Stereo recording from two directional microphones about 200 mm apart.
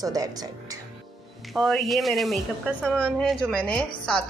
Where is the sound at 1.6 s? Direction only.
Centre (ahead or behind).